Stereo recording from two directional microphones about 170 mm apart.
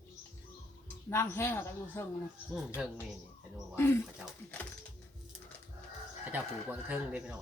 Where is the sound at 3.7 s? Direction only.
15° left (ahead or behind).